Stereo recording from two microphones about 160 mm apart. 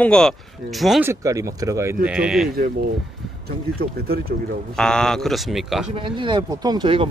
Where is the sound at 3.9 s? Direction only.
70° right (ahead or behind).